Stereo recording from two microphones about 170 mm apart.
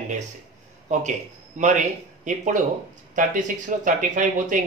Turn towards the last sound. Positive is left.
turn(degrees=-50)  # may be behind; listen again after turning